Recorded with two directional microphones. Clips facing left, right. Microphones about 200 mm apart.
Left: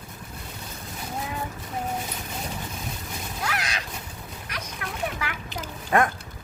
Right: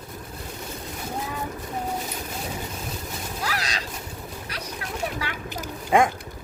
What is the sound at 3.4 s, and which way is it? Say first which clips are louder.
Vehicle: even; 35° right (ahead or behind).